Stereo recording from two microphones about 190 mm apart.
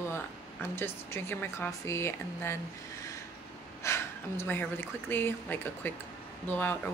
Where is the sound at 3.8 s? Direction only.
15° left (ahead or behind).